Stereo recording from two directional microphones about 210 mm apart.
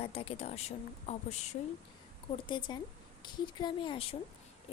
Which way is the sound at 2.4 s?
20° left (ahead or behind).